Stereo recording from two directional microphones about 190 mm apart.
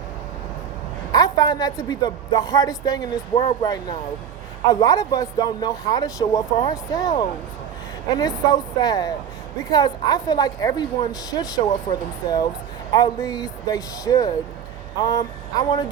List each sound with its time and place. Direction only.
1.1 s speech: 20° left (ahead or behind)